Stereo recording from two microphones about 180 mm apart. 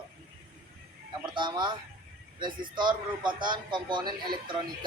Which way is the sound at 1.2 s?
25° right (ahead or behind).